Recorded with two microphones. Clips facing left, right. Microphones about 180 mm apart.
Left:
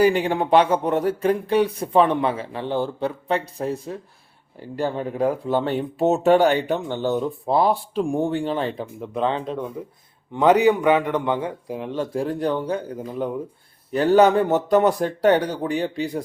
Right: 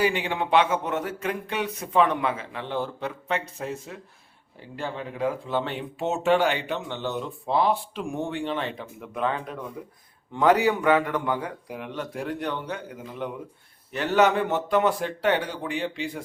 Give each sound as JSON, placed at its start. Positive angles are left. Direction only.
{"t": 0.0, "sound": "speech", "side_deg": 40}